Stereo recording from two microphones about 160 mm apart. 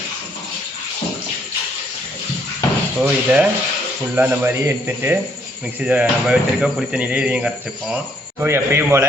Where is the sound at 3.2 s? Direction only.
10° right (ahead or behind).